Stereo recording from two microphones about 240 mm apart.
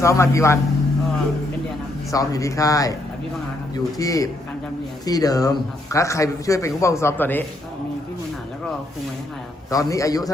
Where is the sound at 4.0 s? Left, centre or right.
Centre.